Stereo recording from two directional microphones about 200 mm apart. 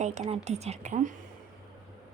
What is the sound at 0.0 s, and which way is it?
A woman's voice, 35° right (ahead or behind).